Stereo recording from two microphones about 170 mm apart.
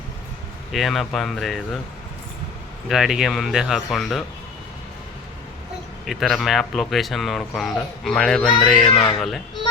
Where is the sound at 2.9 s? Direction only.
Centre (ahead or behind).